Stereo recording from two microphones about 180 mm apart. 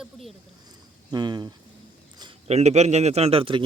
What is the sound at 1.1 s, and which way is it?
Speech, 25° right (ahead or behind).